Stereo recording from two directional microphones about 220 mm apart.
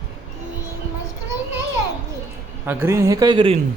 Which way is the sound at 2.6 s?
10° right (ahead or behind).